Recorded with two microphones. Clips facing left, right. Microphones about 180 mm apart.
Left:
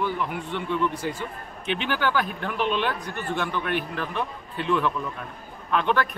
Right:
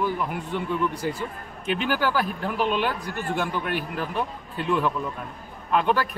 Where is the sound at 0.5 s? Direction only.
35° right (ahead or behind).